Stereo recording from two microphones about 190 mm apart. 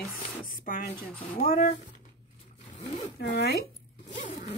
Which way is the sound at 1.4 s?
50° left (ahead or behind).